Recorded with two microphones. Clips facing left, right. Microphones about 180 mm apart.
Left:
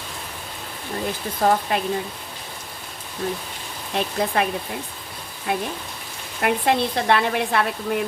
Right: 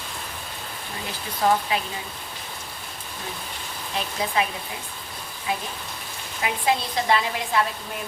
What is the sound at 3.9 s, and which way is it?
Speech, 55° left (ahead or behind).